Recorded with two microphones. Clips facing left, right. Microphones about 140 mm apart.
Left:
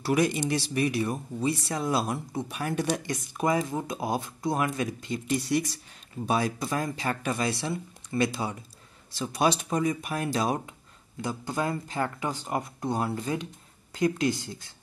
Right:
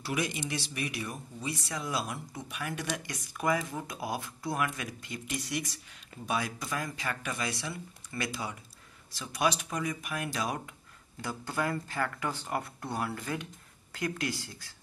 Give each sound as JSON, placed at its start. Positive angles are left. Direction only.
{"t": 0.0, "sound": "speech", "side_deg": 40}
{"t": 11.1, "sound": "speech", "side_deg": 20}